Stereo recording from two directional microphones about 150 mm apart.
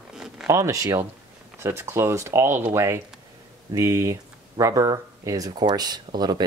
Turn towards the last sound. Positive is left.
turn(degrees=-30)  # may be behind; listen again after turning